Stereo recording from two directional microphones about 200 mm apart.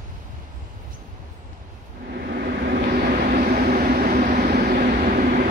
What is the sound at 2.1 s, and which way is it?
Vehicle, 50° right (ahead or behind).